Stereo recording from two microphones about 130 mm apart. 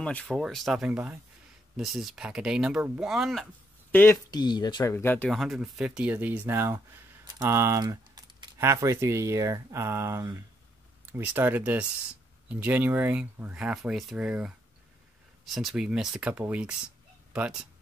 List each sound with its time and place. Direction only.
0.0 s speech: 10° left (ahead or behind)
3.9 s speech: 15° left (ahead or behind)
4.3 s speech: 35° left (ahead or behind)
4.8 s speech: 15° left (ahead or behind)
5.3 s speech: centre (ahead or behind); by 6.8 s 20° right (ahead or behind)
7.2 s a sound: 25° right (ahead or behind)
8.5 s speech: 20° right (ahead or behind)
15.5 s speech: 5° right (ahead or behind)